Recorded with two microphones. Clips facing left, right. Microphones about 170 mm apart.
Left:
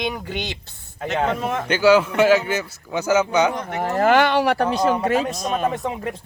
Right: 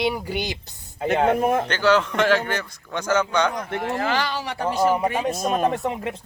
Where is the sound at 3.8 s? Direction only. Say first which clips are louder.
Left 9 dB; 45° left (ahead or behind); by 4.7 s 65° left (ahead or behind).